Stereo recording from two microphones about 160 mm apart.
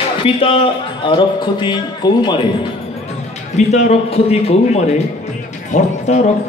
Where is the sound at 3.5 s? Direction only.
45° left (ahead or behind).